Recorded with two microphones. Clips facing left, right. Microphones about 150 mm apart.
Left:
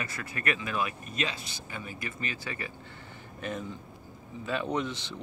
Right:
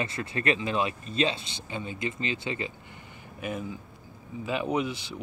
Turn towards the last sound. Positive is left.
turn(degrees=-10)  # may be behind; listen again after turning